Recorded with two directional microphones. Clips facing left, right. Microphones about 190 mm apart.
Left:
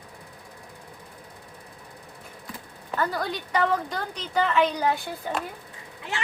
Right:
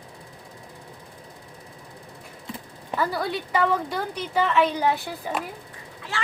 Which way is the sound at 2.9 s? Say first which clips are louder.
Right 2 dB; 5° right (ahead or behind).